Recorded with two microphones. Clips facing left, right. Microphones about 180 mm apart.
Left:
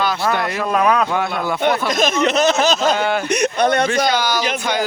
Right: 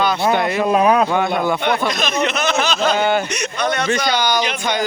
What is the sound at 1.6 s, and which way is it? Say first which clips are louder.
Speech: left 2 dB; 45° left (ahead or behind).